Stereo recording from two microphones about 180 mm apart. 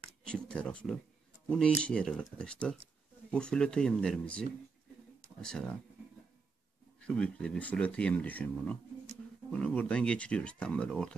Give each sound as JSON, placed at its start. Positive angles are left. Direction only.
{"t": 0.2, "sound": "speech", "side_deg": 5}
{"t": 7.0, "sound": "speech", "side_deg": 5}